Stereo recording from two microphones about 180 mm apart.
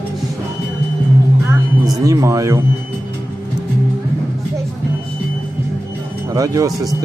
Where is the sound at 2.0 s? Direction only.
20° right (ahead or behind).